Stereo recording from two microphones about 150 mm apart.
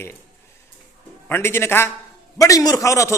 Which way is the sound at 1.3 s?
15° left (ahead or behind).